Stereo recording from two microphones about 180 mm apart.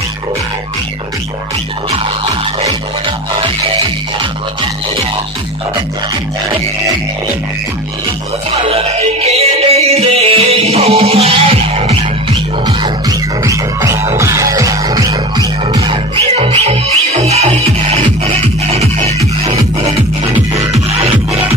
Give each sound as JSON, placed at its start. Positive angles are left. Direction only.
{"t": 8.6, "sound": "music", "side_deg": -35}
{"t": 12.6, "sound": "music", "side_deg": -20}